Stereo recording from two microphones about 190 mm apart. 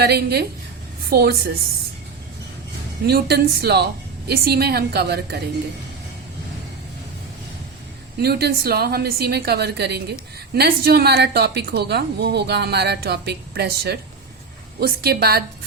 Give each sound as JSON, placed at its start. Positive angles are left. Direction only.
{"t": 0.0, "sound": "a woman's voice", "side_deg": -55}
{"t": 3.1, "sound": "a woman's voice", "side_deg": -55}
{"t": 8.2, "sound": "a woman's voice", "side_deg": -55}